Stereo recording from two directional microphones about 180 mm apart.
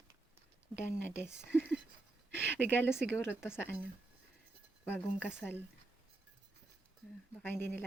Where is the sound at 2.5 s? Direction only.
10° left (ahead or behind).